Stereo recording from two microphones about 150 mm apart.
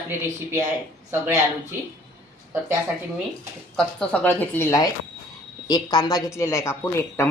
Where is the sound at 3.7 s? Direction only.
5° left (ahead or behind).